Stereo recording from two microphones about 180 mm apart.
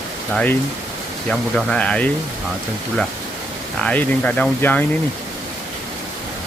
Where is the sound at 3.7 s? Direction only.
5° left (ahead or behind).